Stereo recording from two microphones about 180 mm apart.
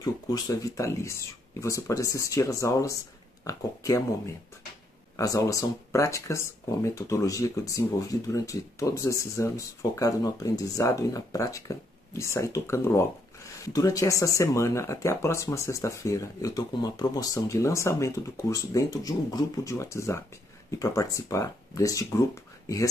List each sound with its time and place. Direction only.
0.0 s speech: 20° left (ahead or behind)
5.1 s speech: 20° left (ahead or behind)